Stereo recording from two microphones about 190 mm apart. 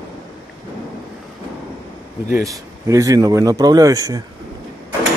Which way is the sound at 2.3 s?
15° right (ahead or behind).